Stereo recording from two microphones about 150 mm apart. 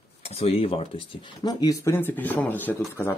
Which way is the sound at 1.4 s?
25° left (ahead or behind).